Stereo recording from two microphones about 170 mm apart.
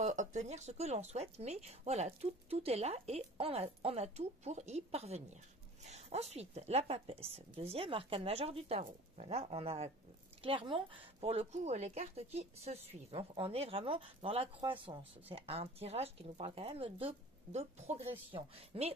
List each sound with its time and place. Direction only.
0.0 s speech: 45° right (ahead or behind)